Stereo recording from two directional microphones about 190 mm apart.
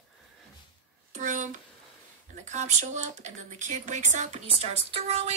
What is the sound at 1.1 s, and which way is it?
Speech, 40° right (ahead or behind).